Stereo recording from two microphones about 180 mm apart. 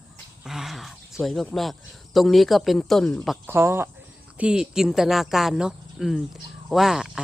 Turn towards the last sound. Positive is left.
turn(degrees=-5)  # may be behind; listen again after turning